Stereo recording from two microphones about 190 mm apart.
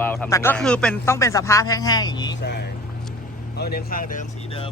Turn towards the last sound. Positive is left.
turn(degrees=45)  # may be behind; listen again after turning